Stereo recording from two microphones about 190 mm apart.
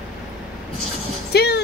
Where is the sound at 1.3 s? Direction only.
60° left (ahead or behind).